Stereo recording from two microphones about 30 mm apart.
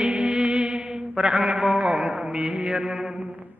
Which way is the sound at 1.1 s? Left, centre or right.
Right.